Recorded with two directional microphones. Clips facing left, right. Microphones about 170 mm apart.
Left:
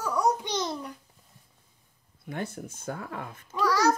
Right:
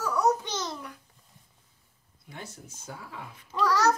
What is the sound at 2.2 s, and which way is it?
Speech, 55° left (ahead or behind).